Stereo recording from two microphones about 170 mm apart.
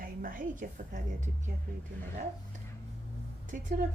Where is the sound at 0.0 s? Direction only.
55° right (ahead or behind).